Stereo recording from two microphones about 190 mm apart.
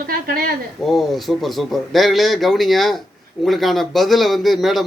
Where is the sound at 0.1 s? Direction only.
50° right (ahead or behind).